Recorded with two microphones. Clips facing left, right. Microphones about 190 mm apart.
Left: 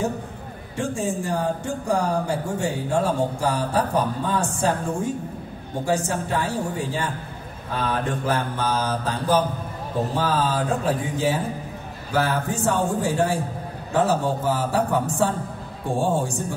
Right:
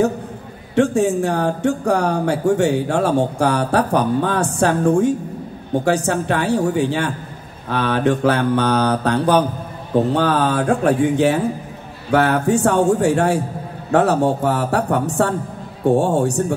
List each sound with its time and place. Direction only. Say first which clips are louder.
0.7 s speech: right 10 dB; 70° right (ahead or behind)